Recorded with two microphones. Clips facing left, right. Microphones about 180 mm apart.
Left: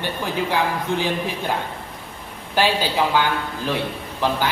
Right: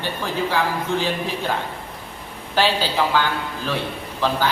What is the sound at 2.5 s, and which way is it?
Speech, 15° left (ahead or behind).